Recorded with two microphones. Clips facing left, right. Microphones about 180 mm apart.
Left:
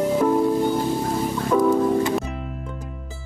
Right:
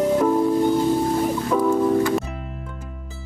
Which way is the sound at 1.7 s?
20° left (ahead or behind).